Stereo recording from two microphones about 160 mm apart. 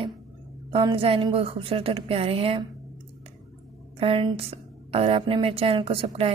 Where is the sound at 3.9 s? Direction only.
35° right (ahead or behind).